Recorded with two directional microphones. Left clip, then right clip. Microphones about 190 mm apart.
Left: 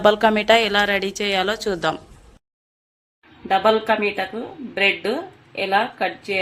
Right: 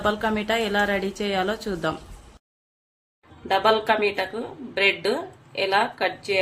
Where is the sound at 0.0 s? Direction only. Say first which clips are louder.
Left 8 dB; 40° left (ahead or behind).